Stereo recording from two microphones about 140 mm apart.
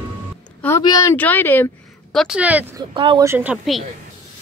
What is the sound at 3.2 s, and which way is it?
Speech, 15° right (ahead or behind).